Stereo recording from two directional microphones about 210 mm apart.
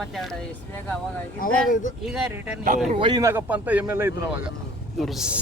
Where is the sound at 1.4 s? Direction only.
40° left (ahead or behind).